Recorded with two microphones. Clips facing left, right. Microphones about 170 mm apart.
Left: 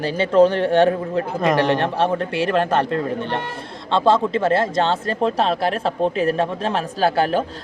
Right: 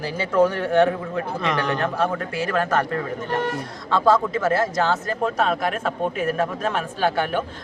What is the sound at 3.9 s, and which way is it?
A man's voice, 25° left (ahead or behind).